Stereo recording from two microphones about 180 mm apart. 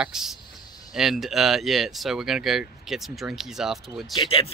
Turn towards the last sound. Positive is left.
turn(degrees=30)  # may be behind; listen again after turning